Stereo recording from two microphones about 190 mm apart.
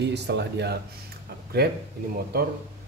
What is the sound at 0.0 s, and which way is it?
A man's voice, 65° right (ahead or behind).